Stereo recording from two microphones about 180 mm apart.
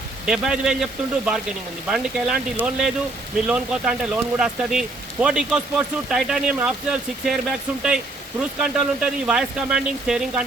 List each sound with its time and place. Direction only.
0.3 s speech: 5° right (ahead or behind)